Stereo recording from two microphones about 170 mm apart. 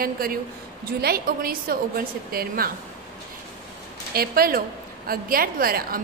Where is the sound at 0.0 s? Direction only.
60° right (ahead or behind).